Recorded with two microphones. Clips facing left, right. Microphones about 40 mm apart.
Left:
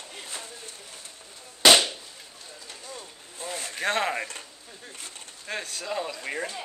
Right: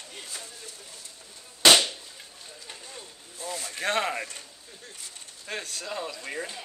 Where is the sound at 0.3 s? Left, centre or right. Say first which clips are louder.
Left 2 dB; left.